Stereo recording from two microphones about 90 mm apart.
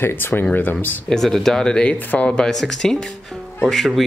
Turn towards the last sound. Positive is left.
turn(degrees=5)  # may be behind; listen again after turning